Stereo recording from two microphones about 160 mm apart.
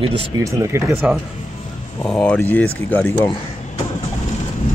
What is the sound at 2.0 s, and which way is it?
Speech, 10° left (ahead or behind).